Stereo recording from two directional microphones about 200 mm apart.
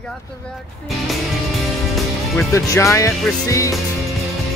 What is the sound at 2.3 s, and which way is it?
Speech, 15° left (ahead or behind).